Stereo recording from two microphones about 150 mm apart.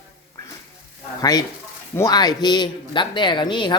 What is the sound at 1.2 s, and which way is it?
Speech, 25° left (ahead or behind).